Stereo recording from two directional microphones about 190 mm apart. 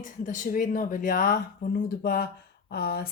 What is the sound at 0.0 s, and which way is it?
Speech, 45° left (ahead or behind).